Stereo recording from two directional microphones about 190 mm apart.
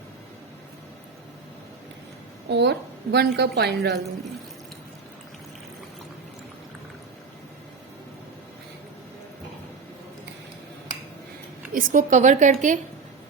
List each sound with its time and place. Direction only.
2.5 s a woman's voice: 60° right (ahead or behind)
11.7 s a woman's voice: 45° right (ahead or behind)